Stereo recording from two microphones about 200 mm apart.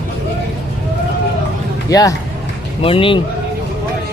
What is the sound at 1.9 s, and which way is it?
A man's voice, 15° left (ahead or behind).